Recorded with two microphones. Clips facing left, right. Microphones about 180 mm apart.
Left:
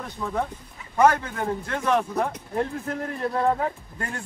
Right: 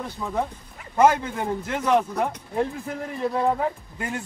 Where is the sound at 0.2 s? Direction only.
10° right (ahead or behind).